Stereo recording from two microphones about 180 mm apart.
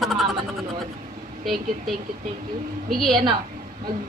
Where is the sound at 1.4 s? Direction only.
Centre (ahead or behind).